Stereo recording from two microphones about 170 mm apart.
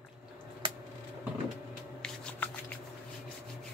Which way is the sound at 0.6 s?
30° right (ahead or behind).